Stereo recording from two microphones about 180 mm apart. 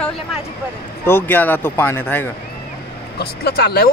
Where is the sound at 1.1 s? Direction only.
10° left (ahead or behind).